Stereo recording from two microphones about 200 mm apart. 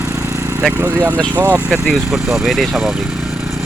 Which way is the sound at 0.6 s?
10° right (ahead or behind).